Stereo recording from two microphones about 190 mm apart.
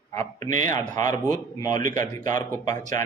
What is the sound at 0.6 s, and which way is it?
A man's voice, 20° left (ahead or behind).